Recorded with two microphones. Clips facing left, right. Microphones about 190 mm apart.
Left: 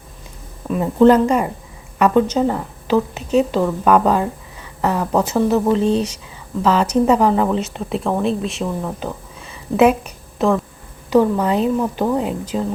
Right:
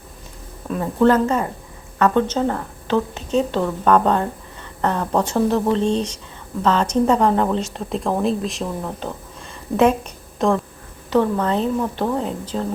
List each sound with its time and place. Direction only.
0.8 s a woman's voice: 15° left (ahead or behind)